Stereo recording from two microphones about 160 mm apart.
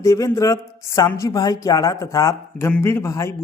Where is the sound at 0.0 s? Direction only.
20° left (ahead or behind).